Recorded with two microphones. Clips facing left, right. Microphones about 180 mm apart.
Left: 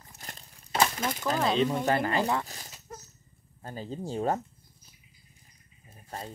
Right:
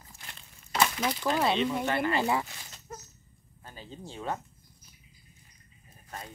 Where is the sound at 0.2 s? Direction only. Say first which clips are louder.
Left 5 dB; 40° left (ahead or behind).